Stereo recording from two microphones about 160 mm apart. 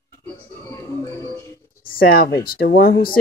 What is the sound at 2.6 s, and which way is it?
Speech, 75° left (ahead or behind).